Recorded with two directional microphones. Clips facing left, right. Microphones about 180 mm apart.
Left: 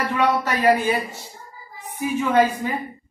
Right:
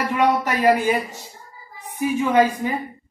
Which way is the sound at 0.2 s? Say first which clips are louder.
Right 2 dB; 15° right (ahead or behind).